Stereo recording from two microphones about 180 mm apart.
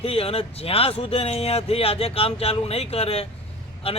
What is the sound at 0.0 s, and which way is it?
Speech, 30° left (ahead or behind).